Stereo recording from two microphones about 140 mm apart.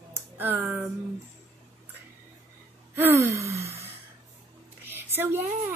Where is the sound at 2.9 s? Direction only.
15° right (ahead or behind).